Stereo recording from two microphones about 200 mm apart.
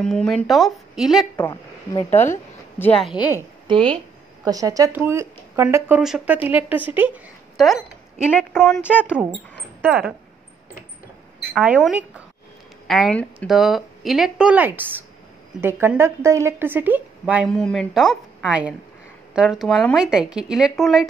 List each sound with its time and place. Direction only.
0.0 s a woman's voice: 5° left (ahead or behind)
1.3 s a woman's voice: 15° left (ahead or behind)
3.2 s speech: 10° right (ahead or behind)
3.6 s a woman's voice: 25° right (ahead or behind); by 9.0 s 5° left (ahead or behind)
9.8 s speech: 5° right (ahead or behind)
11.5 s a woman's voice: 5° right (ahead or behind)